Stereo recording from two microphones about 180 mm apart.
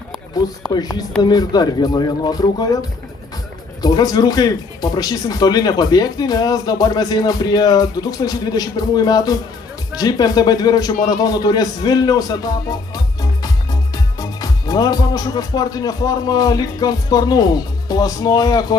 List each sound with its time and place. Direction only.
0.3 s speech: 20° left (ahead or behind)
3.8 s speech: 20° left (ahead or behind)
13.9 s speech: 20° left (ahead or behind)